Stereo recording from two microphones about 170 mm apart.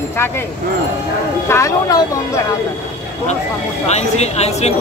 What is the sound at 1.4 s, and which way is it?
Speech, 15° left (ahead or behind).